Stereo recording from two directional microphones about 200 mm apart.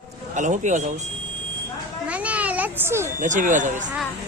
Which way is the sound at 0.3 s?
40° right (ahead or behind).